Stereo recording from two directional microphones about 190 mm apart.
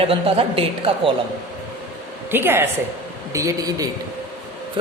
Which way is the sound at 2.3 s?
10° right (ahead or behind).